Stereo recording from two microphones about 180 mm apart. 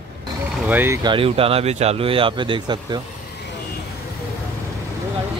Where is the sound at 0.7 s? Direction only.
10° right (ahead or behind).